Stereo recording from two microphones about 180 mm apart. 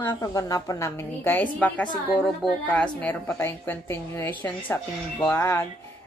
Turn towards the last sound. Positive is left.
turn(degrees=15)  # may be behind; listen again after turning